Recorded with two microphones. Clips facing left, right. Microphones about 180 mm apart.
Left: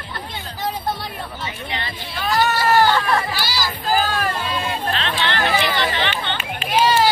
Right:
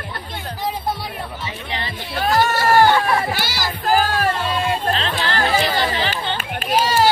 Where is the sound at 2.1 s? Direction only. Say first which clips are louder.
Right 2 dB; 50° right (ahead or behind).